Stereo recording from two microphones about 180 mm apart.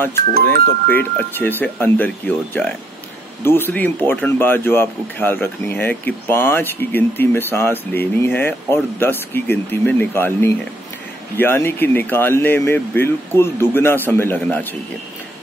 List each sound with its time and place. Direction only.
0.3 s speech: 55° right (ahead or behind)
0.8 s speech: 10° left (ahead or behind)